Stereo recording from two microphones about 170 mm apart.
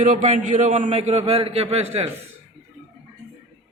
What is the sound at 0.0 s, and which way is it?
A man's voice, 45° right (ahead or behind).